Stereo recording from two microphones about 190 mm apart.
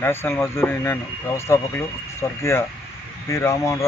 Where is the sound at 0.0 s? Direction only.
10° left (ahead or behind).